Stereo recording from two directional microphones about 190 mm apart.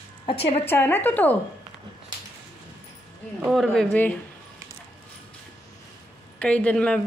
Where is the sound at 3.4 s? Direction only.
Centre (ahead or behind).